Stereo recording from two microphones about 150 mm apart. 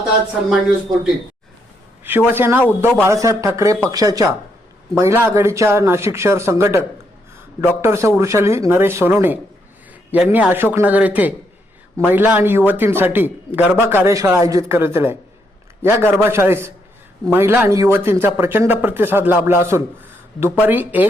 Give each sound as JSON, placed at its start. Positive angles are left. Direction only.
{"t": 2.0, "sound": "speech", "side_deg": -15}
{"t": 2.6, "sound": "speech", "side_deg": 10}
{"t": 3.0, "sound": "a man's voice", "side_deg": -20}